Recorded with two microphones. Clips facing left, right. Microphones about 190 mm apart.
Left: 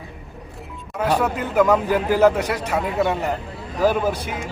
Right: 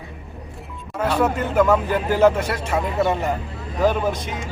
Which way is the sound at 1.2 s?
10° left (ahead or behind).